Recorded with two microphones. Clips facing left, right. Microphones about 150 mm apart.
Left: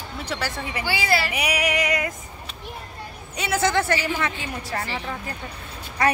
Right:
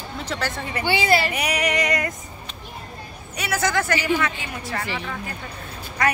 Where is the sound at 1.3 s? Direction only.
5° left (ahead or behind).